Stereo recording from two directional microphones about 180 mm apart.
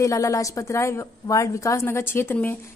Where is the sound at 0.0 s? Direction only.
20° left (ahead or behind).